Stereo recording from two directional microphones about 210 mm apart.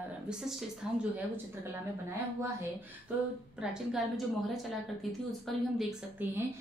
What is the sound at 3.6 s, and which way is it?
Speech, 5° right (ahead or behind).